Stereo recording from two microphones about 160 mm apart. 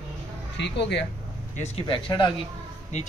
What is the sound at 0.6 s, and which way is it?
Speech, 90° left.